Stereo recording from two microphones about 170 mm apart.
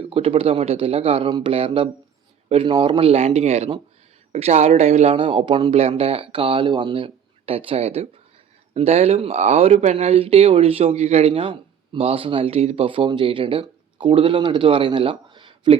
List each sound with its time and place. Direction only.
0.0 s speech: 35° right (ahead or behind)